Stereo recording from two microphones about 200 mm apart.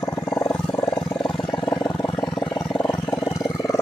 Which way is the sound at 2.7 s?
10° left (ahead or behind).